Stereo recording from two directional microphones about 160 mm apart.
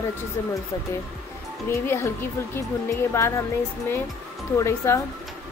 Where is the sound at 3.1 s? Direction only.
15° left (ahead or behind).